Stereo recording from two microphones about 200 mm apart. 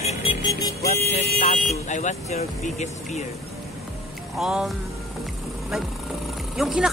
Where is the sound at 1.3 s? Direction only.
40° left (ahead or behind).